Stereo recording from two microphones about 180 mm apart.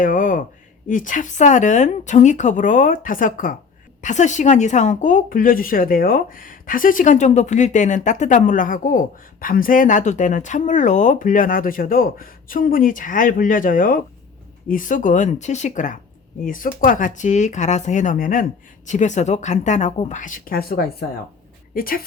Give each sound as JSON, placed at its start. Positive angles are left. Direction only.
{"t": 0.0, "sound": "a woman's voice", "side_deg": 50}